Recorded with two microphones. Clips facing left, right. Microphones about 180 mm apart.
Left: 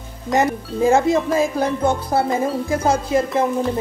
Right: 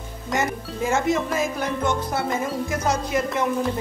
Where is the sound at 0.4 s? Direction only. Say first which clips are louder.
Left 8 dB; 35° left (ahead or behind).